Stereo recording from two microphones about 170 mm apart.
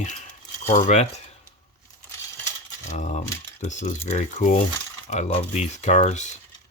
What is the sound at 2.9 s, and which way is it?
Speech, 45° left (ahead or behind).